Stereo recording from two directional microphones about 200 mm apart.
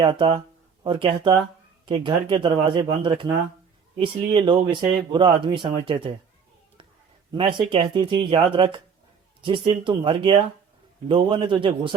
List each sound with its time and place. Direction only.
0.0 s speech: 25° right (ahead or behind)
7.3 s speech: 25° right (ahead or behind)